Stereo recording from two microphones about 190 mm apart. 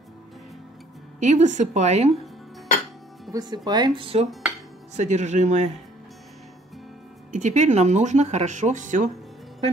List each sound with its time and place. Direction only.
1.2 s speech: 40° right (ahead or behind)
3.3 s speech: 20° right (ahead or behind); by 5.7 s 35° right (ahead or behind)
7.3 s speech: 40° right (ahead or behind)